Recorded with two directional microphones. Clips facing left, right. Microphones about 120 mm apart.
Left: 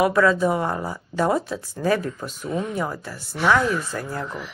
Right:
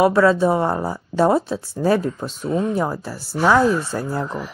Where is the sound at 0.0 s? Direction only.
30° right (ahead or behind).